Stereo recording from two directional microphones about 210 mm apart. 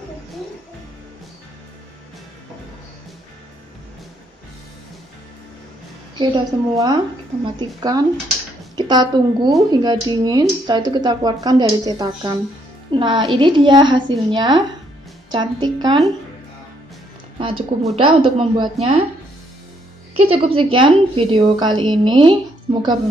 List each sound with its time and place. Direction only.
6.1 s a woman's voice: 20° right (ahead or behind)
17.4 s a woman's voice: 25° right (ahead or behind)
20.2 s speech: 25° right (ahead or behind)